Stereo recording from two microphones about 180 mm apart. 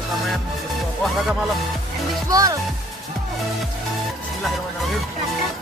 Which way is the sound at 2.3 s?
20° right (ahead or behind).